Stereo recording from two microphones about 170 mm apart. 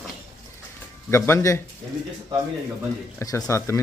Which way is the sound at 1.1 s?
15° left (ahead or behind).